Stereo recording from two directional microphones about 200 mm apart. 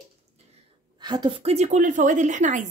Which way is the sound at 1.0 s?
20° right (ahead or behind).